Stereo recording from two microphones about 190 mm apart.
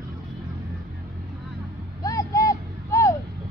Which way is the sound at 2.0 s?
20° left (ahead or behind).